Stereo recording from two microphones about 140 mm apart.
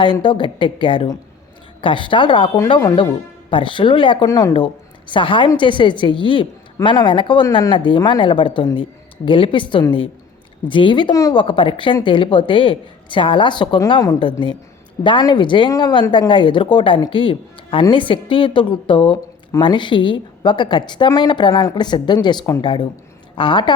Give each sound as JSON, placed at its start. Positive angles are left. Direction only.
{"t": 0.0, "sound": "a woman's voice", "side_deg": 35}
{"t": 4.3, "sound": "speech", "side_deg": 20}
{"t": 5.0, "sound": "a woman's voice", "side_deg": 35}
{"t": 11.3, "sound": "a woman's voice", "side_deg": 40}